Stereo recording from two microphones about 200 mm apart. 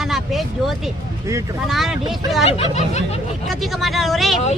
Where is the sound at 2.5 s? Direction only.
30° left (ahead or behind).